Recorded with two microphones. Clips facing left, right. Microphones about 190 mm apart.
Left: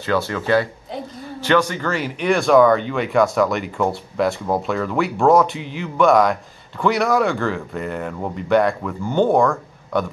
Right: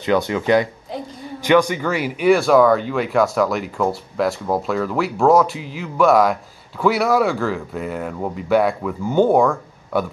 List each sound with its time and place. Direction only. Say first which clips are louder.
0.0 s speech: right 3 dB; 20° right (ahead or behind)